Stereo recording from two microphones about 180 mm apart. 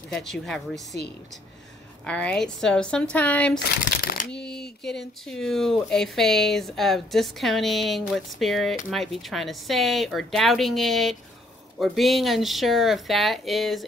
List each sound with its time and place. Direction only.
0.1 s speech: centre (ahead or behind)
2.0 s a woman's voice: 5° left (ahead or behind)
3.5 s speech: 60° left (ahead or behind)
5.2 s speech: centre (ahead or behind)